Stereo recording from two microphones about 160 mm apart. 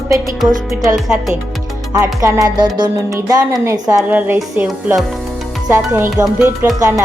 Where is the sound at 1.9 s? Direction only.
20° right (ahead or behind).